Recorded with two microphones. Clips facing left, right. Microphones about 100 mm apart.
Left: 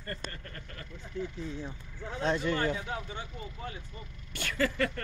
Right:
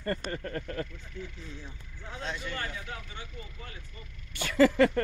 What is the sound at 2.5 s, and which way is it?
Speech, 25° left (ahead or behind).